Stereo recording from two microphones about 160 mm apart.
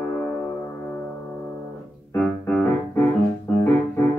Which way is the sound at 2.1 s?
10° left (ahead or behind).